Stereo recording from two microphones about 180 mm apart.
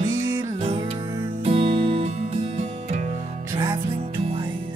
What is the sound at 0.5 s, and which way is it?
Music, 30° right (ahead or behind).